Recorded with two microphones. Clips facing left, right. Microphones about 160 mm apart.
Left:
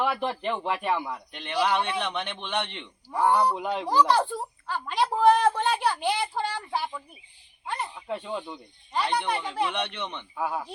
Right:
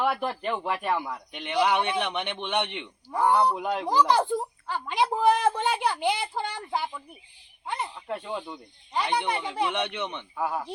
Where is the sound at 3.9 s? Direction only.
15° right (ahead or behind).